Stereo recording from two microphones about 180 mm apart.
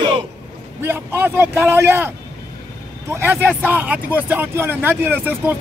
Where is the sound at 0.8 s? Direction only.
10° right (ahead or behind).